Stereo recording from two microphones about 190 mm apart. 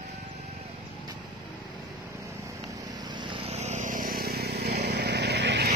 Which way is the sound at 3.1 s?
30° right (ahead or behind).